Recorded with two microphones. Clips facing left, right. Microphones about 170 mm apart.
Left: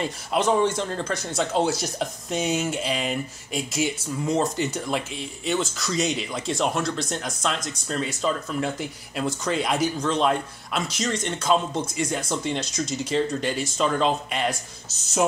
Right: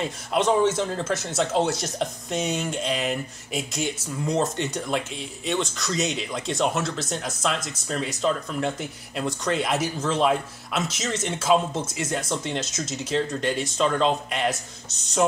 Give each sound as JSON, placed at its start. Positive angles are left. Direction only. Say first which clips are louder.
{"t": 0.0, "sound": "speech", "louder": "even", "side_deg": 0}